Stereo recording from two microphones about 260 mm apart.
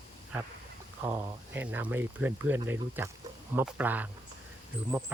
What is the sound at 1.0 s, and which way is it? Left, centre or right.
Speech, centre.